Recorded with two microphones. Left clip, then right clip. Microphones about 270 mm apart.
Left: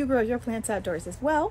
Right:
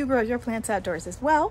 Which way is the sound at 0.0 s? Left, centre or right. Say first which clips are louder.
Right 1 dB; centre.